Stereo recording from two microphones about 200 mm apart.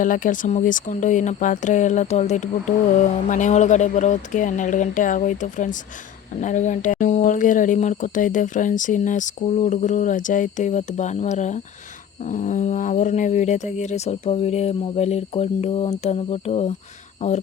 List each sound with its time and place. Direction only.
0.0 s speech: 40° left (ahead or behind)